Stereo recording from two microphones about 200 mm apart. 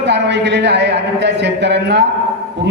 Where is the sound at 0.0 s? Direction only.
60° right (ahead or behind).